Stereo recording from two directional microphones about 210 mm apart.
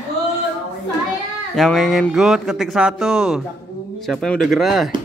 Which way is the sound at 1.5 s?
Centre (ahead or behind).